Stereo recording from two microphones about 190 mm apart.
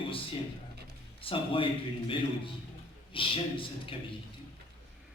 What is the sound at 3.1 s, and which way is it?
Speech, 25° left (ahead or behind).